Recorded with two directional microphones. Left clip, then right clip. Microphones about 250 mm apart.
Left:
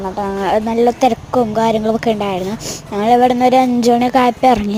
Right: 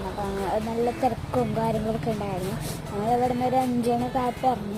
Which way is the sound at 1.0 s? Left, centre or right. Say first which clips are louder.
Left 11 dB; left.